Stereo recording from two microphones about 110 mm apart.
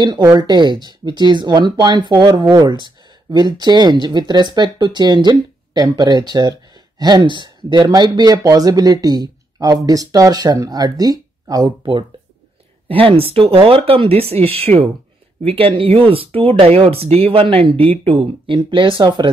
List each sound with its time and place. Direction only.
0.0 s speech: 40° right (ahead or behind)
12.8 s speech: 60° right (ahead or behind)